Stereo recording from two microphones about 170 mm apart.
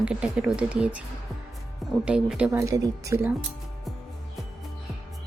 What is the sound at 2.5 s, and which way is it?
Speech, 20° right (ahead or behind).